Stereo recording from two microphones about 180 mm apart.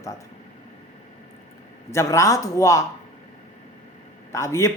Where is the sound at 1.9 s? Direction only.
15° left (ahead or behind).